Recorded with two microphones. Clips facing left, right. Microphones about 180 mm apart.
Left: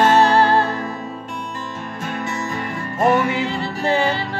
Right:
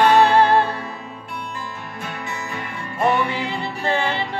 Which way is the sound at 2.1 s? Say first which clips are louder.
Left 6 dB; 40° left (ahead or behind).